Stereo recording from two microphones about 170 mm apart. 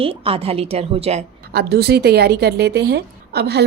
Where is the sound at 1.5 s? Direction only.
70° right (ahead or behind).